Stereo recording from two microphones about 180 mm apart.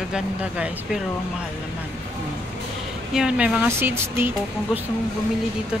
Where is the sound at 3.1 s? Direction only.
5° right (ahead or behind).